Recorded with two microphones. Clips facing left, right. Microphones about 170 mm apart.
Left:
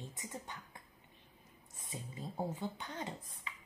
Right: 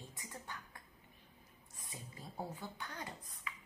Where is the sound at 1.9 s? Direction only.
20° left (ahead or behind).